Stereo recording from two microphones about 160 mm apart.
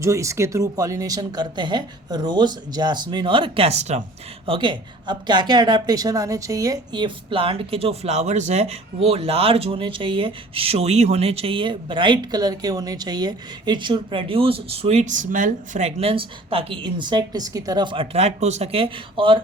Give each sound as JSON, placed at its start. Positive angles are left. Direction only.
{"t": 0.0, "sound": "speech", "side_deg": -20}
{"t": 4.4, "sound": "a woman's voice", "side_deg": -30}